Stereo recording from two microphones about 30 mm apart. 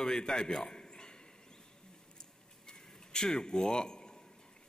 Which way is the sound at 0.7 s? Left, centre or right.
Left.